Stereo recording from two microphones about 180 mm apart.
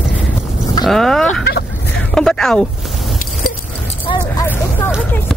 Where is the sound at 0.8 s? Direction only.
Centre (ahead or behind).